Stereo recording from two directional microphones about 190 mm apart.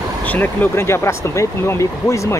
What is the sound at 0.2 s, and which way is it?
Speech, 10° left (ahead or behind).